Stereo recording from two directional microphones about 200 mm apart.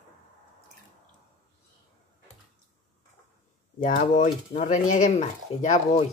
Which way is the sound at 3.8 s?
40° left (ahead or behind).